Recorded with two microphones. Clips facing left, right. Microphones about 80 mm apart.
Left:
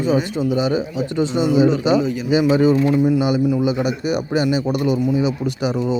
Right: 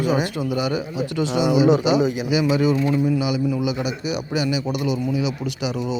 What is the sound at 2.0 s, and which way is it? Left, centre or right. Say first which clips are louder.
Speech: even; centre.